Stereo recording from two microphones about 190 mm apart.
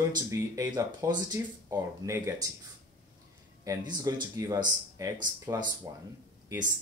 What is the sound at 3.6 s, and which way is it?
Speech, 20° right (ahead or behind).